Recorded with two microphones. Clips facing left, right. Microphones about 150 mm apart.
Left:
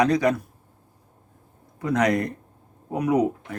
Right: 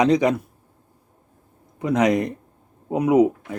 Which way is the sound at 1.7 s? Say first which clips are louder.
Right 3 dB; 20° right (ahead or behind).